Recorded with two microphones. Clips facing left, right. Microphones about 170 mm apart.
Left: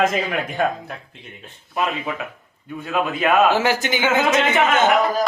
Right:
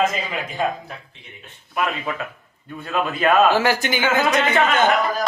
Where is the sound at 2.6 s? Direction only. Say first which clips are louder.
Left 1 dB; 5° left (ahead or behind).